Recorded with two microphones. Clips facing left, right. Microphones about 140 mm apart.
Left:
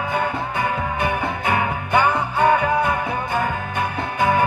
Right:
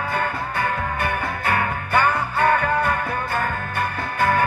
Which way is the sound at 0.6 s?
10° left (ahead or behind).